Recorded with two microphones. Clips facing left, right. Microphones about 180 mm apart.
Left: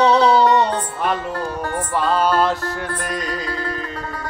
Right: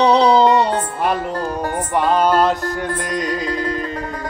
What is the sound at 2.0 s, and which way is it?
Music, 15° right (ahead or behind).